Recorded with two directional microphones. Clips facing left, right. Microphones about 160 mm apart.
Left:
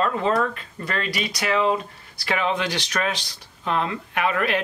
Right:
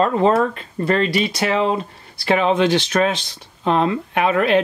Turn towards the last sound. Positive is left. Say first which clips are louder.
# right 7 dB
turn(degrees=-25)  # may be behind; listen again after turning